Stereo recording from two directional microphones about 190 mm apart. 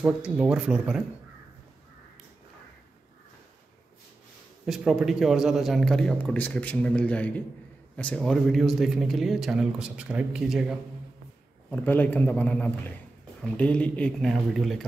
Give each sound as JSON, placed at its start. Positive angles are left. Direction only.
{"t": 0.0, "sound": "a man's voice", "side_deg": -5}
{"t": 4.6, "sound": "a man's voice", "side_deg": 0}
{"t": 11.7, "sound": "a man's voice", "side_deg": 10}